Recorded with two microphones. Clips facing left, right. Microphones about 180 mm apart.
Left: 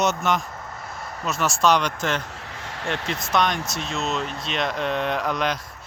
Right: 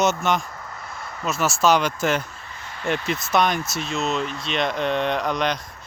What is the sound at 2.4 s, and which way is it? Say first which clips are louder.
Vehicle: left 3 dB; 80° left.